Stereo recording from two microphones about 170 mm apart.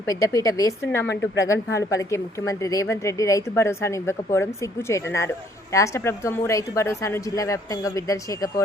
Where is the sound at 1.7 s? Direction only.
20° left (ahead or behind).